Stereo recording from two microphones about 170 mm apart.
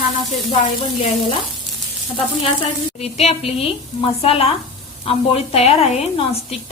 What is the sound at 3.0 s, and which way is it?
A woman's voice, 35° left (ahead or behind).